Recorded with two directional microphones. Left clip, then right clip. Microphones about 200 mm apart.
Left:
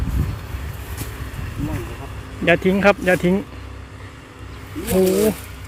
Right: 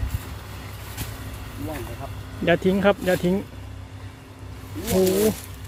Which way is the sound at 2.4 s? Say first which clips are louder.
Left 4 dB; 5° right (ahead or behind).